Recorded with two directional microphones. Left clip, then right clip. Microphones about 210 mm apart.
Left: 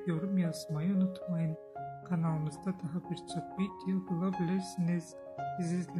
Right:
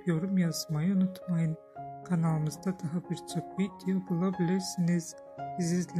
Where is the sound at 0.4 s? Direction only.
25° right (ahead or behind).